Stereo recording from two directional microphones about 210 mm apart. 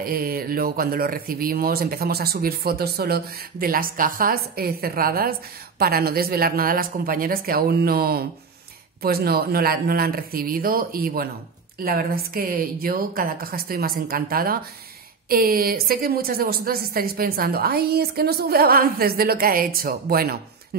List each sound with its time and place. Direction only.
0.0 s speech: 45° right (ahead or behind)